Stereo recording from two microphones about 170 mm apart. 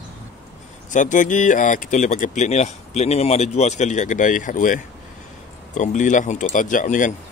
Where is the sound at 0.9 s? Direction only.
50° left (ahead or behind).